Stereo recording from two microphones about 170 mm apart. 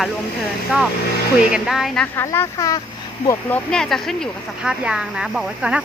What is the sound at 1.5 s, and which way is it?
Speech, centre (ahead or behind).